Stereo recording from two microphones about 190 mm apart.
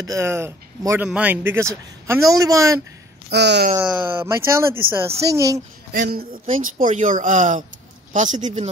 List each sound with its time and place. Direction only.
0.0 s speech: 15° right (ahead or behind)
3.3 s speech: 60° right (ahead or behind)
3.8 s speech: 10° right (ahead or behind)
5.9 s speech: 50° right (ahead or behind)